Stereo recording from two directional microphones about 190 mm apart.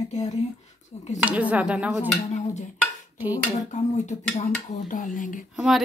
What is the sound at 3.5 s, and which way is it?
Speech, 40° left (ahead or behind).